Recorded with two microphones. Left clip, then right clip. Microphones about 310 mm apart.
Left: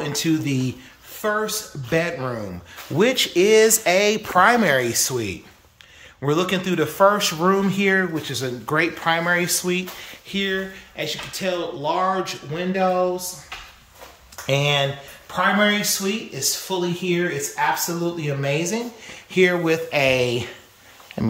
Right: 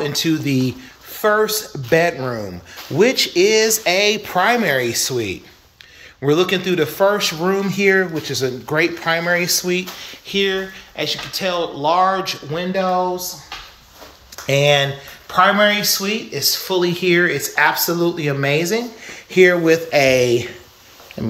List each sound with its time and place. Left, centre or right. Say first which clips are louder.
0.0 s speech: right 3 dB; centre
14.4 s speech: right 5 dB; centre
21.2 s speech: even; centre